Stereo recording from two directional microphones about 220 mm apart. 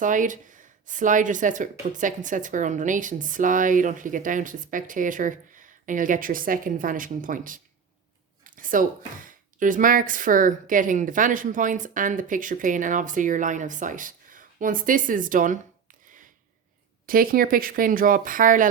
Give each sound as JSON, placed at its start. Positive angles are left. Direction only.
{"t": 0.0, "sound": "speech", "side_deg": -35}
{"t": 8.4, "sound": "a sound", "side_deg": -35}
{"t": 9.2, "sound": "speech", "side_deg": -35}